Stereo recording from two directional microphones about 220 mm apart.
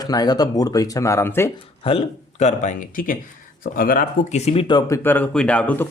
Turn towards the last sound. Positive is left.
turn(degrees=5)  # may be behind; listen again after turning